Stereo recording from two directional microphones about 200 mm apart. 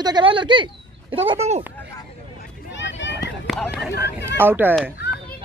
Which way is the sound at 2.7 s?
65° left (ahead or behind).